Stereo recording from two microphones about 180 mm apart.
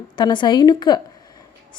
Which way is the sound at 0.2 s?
25° left (ahead or behind).